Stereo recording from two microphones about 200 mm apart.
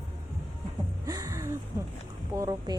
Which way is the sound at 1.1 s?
15° right (ahead or behind).